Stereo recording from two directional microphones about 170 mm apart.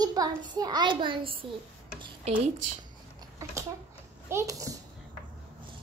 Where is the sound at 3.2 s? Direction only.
20° right (ahead or behind).